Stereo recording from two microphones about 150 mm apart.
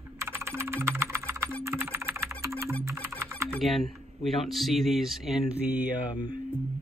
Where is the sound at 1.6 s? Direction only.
15° right (ahead or behind).